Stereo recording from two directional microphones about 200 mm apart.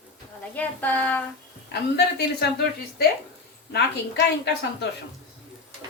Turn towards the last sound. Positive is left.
turn(degrees=60)  # may be behind; listen again after turning